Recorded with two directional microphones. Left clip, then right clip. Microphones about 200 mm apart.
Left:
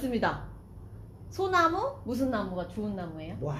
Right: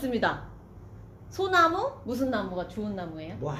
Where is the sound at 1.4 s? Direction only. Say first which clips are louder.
Right 3 dB; 10° left (ahead or behind).